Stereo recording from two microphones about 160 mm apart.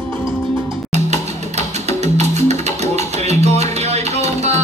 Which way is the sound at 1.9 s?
45° right (ahead or behind).